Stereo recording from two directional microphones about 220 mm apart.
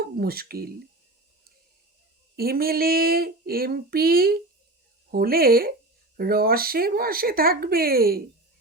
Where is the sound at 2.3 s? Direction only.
45° right (ahead or behind).